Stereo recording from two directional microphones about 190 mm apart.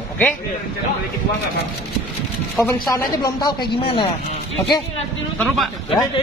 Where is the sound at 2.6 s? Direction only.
20° left (ahead or behind).